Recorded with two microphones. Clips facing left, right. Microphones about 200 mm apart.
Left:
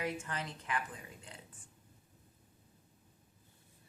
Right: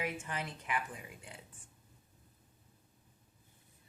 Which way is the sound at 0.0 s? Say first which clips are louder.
Even; 15° right (ahead or behind).